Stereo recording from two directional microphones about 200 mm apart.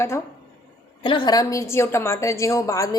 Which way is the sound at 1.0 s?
25° left (ahead or behind).